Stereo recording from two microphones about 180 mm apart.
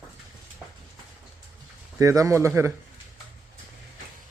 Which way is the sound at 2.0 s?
15° right (ahead or behind).